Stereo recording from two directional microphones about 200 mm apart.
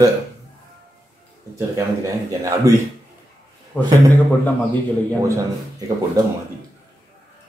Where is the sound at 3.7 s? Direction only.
10° left (ahead or behind).